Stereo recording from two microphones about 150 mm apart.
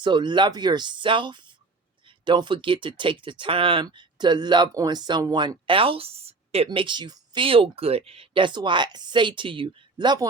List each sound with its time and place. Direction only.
0.0 s speech: 30° right (ahead or behind)
6.7 s speech: 30° right (ahead or behind)